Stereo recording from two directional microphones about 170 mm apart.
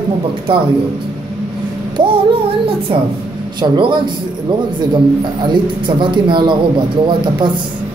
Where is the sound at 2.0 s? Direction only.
30° right (ahead or behind).